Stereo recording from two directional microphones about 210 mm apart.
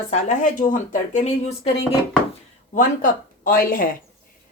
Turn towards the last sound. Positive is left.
turn(degrees=45)  # may be behind; listen again after turning